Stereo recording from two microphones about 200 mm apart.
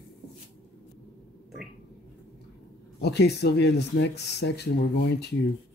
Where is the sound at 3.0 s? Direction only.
55° left (ahead or behind).